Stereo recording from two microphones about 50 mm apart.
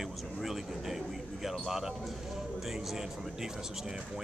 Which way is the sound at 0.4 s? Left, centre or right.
Centre.